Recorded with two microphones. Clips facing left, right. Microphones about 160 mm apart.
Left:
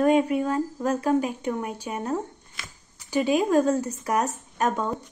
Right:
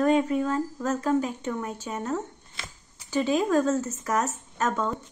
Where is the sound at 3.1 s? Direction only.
15° left (ahead or behind).